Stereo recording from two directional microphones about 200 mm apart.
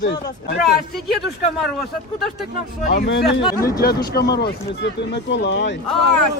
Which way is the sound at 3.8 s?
50° left (ahead or behind).